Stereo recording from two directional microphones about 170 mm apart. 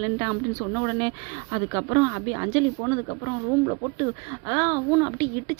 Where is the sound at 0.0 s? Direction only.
20° right (ahead or behind).